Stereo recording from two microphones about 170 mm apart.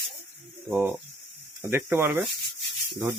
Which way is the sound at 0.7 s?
5° right (ahead or behind).